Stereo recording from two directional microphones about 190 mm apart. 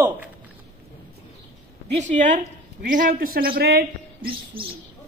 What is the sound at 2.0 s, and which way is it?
A woman's voice, 40° right (ahead or behind).